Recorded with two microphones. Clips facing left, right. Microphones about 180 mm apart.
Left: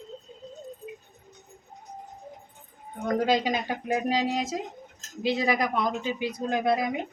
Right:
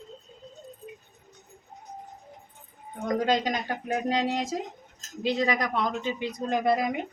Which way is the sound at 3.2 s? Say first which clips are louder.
Left 1 dB; 10° left (ahead or behind).